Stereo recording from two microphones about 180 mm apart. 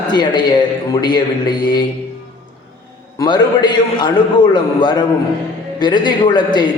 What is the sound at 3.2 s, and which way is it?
A man's voice, 25° left (ahead or behind).